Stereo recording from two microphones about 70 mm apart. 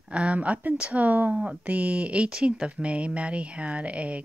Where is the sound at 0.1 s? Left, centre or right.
Centre.